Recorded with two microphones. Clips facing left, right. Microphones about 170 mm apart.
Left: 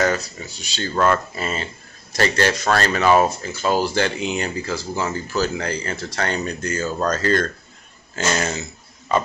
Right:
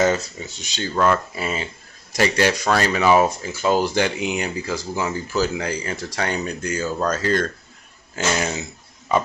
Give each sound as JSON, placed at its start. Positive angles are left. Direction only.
{"t": 0.0, "sound": "speech", "side_deg": -20}
{"t": 0.9, "sound": "speech", "side_deg": -5}